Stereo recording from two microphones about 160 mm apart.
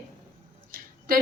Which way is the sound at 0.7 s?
65° right (ahead or behind).